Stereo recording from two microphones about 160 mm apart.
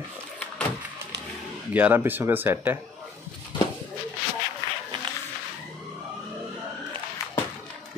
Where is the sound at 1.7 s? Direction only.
10° right (ahead or behind).